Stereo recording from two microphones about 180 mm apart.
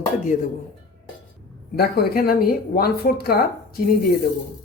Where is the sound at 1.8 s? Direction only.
60° left (ahead or behind).